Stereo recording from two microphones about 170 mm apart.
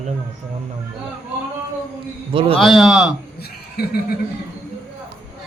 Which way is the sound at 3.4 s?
65° left (ahead or behind).